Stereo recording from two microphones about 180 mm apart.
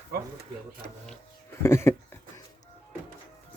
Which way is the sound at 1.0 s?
15° left (ahead or behind).